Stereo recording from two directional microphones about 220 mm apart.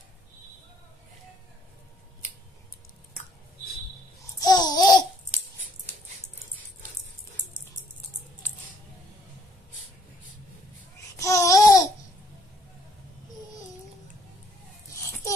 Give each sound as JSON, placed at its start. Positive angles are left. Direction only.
{"t": 4.4, "sound": "babbling", "side_deg": 20}
{"t": 11.1, "sound": "babbling", "side_deg": 15}
{"t": 14.9, "sound": "a sound", "side_deg": 15}